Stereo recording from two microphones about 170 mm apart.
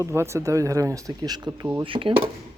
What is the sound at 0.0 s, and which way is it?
Speech, 15° right (ahead or behind).